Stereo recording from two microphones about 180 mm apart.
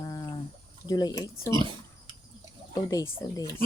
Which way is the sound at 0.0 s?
20° left (ahead or behind).